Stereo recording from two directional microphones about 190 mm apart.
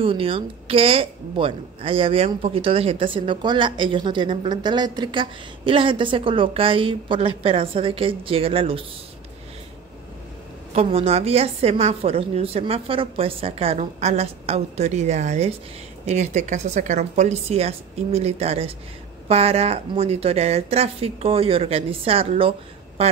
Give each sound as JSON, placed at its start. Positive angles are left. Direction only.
{"t": 0.0, "sound": "speech", "side_deg": -30}
{"t": 10.7, "sound": "a woman's voice", "side_deg": -30}